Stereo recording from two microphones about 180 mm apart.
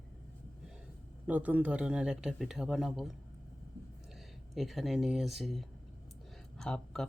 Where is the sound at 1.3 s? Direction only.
10° right (ahead or behind).